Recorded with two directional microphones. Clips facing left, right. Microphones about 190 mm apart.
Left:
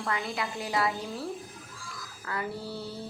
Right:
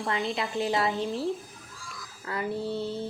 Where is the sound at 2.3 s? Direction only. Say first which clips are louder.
Right 5 dB; 20° right (ahead or behind).